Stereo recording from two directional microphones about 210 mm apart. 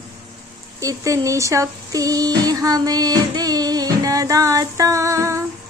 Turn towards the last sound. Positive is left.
turn(degrees=-15)  # may be behind; listen again after turning